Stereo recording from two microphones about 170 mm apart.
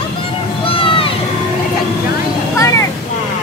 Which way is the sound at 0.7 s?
30° left (ahead or behind).